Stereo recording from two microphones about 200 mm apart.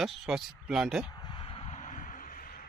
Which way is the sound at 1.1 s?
20° left (ahead or behind).